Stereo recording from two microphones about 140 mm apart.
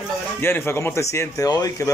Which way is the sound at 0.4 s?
15° left (ahead or behind).